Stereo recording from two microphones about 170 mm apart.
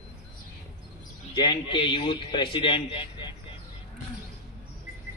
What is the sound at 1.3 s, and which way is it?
A man's voice, 25° left (ahead or behind).